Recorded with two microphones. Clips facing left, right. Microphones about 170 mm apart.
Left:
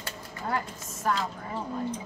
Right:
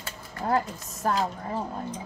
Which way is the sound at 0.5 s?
35° right (ahead or behind).